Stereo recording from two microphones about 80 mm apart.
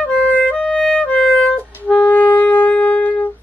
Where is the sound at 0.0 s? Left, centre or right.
Centre.